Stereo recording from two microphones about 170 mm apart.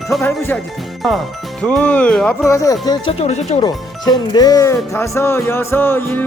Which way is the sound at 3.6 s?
25° left (ahead or behind).